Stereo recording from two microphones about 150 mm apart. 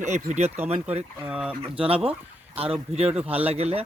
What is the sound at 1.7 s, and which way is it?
Speech, 40° right (ahead or behind).